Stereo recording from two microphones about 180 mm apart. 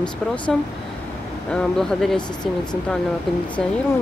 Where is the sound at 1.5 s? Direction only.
Centre (ahead or behind).